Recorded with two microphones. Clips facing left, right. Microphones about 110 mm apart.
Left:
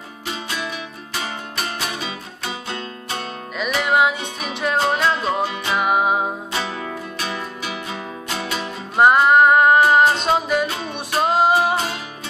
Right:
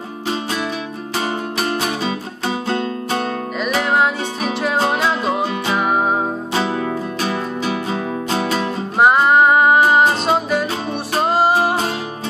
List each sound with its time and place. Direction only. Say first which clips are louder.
1.8 s music: right 7 dB; 40° right (ahead or behind)
3.5 s music: even; centre (ahead or behind)
6.5 s music: right 7 dB; 30° right (ahead or behind)
8.9 s music: even; centre (ahead or behind)